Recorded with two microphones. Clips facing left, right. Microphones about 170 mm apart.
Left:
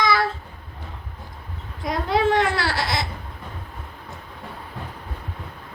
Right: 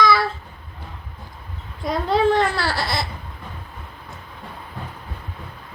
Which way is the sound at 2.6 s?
25° left (ahead or behind).